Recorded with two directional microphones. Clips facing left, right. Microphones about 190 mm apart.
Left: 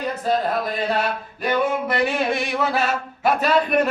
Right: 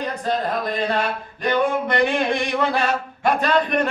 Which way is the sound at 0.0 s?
5° left (ahead or behind).